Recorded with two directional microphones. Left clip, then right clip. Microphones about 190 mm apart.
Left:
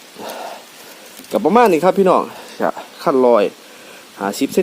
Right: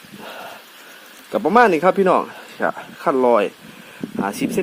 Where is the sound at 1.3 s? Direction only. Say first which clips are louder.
Left 2 dB; 5° left (ahead or behind).